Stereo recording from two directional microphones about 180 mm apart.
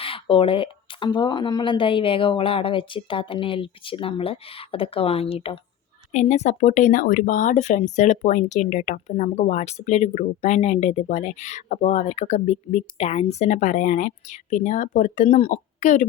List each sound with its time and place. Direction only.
0.0 s speech: 30° left (ahead or behind)